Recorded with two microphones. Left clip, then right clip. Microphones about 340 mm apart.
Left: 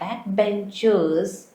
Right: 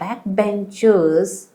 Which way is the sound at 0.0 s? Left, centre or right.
Right.